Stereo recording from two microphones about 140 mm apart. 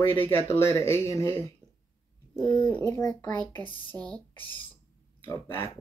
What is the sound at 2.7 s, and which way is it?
Speech, 20° left (ahead or behind).